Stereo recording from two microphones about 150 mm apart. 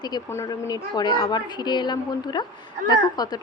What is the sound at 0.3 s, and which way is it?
Speech, 20° left (ahead or behind).